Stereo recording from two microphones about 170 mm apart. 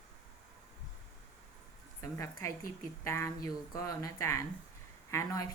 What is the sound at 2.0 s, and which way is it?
Speech, 15° left (ahead or behind).